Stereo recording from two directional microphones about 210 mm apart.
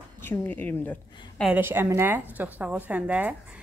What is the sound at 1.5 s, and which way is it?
A woman's voice, 10° right (ahead or behind).